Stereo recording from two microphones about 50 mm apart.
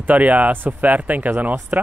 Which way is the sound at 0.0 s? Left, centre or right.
Right.